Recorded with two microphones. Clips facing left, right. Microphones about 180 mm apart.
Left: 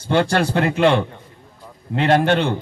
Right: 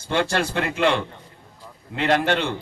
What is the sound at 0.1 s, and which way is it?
A man's voice, 50° left (ahead or behind).